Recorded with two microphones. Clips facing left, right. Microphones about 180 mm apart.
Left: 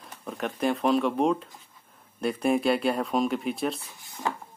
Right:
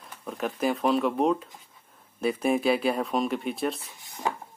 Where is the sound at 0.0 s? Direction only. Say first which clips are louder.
Right 1 dB; centre (ahead or behind).